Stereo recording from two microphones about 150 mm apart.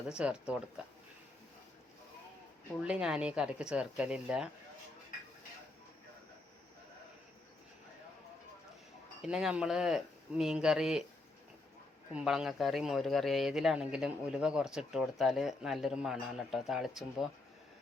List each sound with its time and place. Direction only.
0.1 s speech: 5° right (ahead or behind)
2.8 s speech: 5° right (ahead or behind)
9.2 s speech: 5° right (ahead or behind)
12.1 s speech: 5° right (ahead or behind)